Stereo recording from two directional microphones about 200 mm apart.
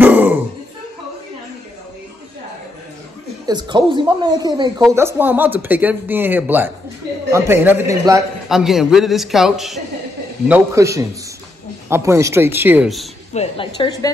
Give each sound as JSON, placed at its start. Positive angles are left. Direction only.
{"t": 0.0, "sound": "a sound", "side_deg": -10}
{"t": 3.4, "sound": "speech", "side_deg": -20}
{"t": 8.5, "sound": "a man's voice", "side_deg": 0}
{"t": 10.5, "sound": "speech", "side_deg": -15}
{"t": 13.3, "sound": "a woman's voice", "side_deg": 30}
{"t": 13.7, "sound": "a woman's voice", "side_deg": 20}